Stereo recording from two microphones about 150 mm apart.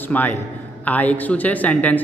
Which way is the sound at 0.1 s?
10° left (ahead or behind).